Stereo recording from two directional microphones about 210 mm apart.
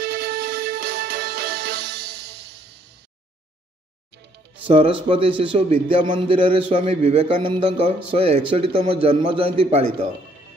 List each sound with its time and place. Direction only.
0.0 s music: 50° right (ahead or behind)
4.6 s speech: 25° right (ahead or behind)